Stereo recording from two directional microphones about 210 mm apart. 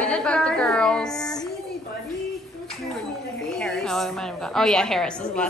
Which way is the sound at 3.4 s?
Centre (ahead or behind).